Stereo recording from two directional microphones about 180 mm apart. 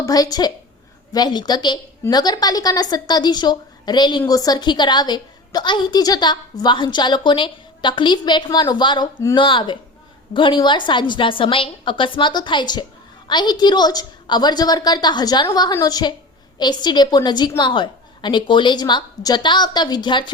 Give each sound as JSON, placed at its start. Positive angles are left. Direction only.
{"t": 0.0, "sound": "a woman's voice", "side_deg": 20}